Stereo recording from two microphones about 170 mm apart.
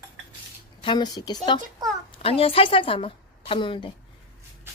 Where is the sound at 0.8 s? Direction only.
25° left (ahead or behind).